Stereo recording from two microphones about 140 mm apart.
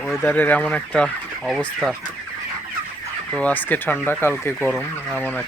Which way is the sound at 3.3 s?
10° left (ahead or behind).